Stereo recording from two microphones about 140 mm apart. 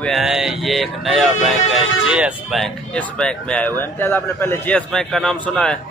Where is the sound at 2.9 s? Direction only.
10° left (ahead or behind).